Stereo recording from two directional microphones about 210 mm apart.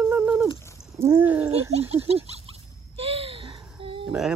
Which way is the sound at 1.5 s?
30° right (ahead or behind).